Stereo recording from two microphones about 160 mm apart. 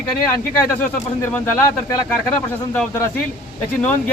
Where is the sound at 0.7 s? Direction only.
10° left (ahead or behind).